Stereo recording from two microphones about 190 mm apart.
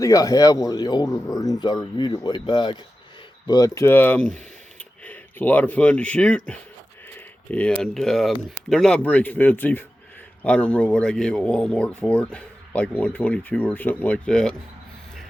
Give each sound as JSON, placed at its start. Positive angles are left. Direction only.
{"t": 0.0, "sound": "a man's voice", "side_deg": 20}